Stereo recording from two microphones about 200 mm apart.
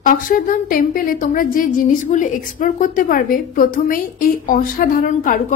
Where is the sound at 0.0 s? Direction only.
40° left (ahead or behind).